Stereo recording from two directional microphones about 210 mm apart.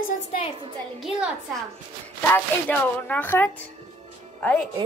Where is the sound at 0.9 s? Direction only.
Centre (ahead or behind).